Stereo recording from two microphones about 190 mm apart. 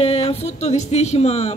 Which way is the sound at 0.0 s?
30° left (ahead or behind).